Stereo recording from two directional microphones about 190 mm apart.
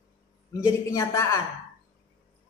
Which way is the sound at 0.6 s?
15° left (ahead or behind).